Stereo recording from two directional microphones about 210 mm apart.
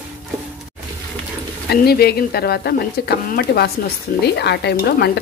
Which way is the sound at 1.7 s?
50° left (ahead or behind).